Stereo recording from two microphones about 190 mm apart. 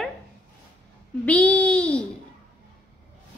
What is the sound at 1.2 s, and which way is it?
Babbling, 5° left (ahead or behind).